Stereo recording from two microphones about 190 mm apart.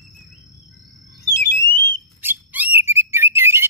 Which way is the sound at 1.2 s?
10° left (ahead or behind).